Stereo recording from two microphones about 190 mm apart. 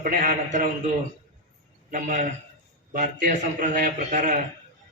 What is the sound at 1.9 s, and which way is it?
A man's voice, 45° right (ahead or behind).